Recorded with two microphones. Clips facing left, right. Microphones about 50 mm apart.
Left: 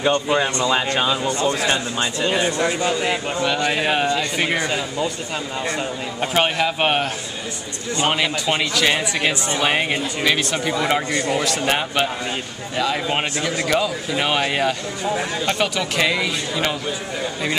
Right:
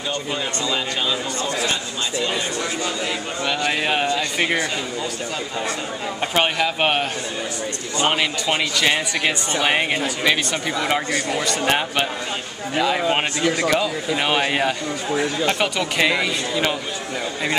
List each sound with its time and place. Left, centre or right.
0.0 s speech: left
3.6 s speech: centre
6.2 s speech: centre
8.1 s speech: centre
11.1 s speech: left
11.3 s speech: centre